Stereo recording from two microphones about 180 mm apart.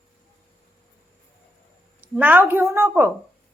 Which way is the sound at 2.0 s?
10° right (ahead or behind).